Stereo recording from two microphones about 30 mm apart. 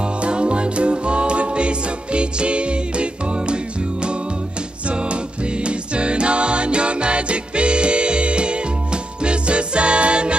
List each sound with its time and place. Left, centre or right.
0.0 s music: right